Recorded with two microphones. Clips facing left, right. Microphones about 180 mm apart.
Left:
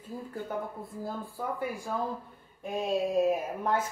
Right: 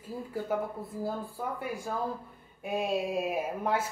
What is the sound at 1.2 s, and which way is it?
Speech, centre (ahead or behind).